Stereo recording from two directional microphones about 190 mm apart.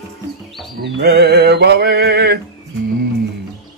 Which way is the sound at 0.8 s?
65° right (ahead or behind).